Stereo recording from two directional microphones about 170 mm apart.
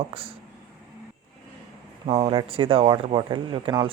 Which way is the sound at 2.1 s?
30° right (ahead or behind).